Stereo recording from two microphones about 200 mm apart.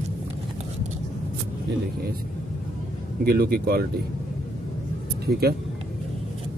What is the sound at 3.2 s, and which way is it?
Speech, 50° right (ahead or behind).